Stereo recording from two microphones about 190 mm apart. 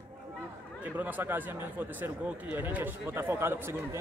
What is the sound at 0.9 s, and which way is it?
Speech, 10° right (ahead or behind).